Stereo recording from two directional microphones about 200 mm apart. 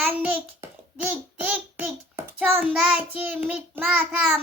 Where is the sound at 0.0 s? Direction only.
5° right (ahead or behind).